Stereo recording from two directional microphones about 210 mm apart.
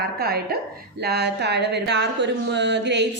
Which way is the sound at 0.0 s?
45° right (ahead or behind).